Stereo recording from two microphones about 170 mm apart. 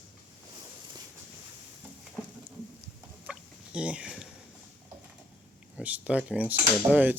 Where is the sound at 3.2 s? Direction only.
5° right (ahead or behind).